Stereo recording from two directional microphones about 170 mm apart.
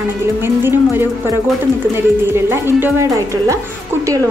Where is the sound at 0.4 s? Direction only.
15° right (ahead or behind).